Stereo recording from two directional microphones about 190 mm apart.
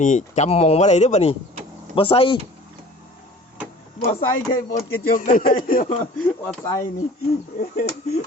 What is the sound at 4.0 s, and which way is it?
Speech, 50° left (ahead or behind).